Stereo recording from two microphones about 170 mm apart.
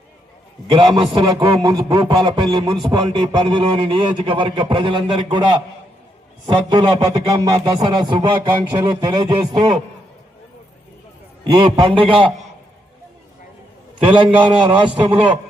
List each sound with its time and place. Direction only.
0.7 s a man's voice: 30° right (ahead or behind)
11.4 s a man's voice: 25° right (ahead or behind)
14.0 s a man's voice: 30° right (ahead or behind)